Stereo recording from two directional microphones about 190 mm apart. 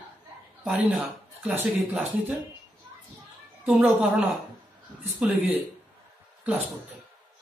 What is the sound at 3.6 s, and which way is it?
Speech, 5° right (ahead or behind).